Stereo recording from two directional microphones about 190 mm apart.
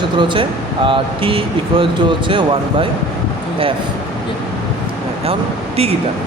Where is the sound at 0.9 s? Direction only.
25° right (ahead or behind).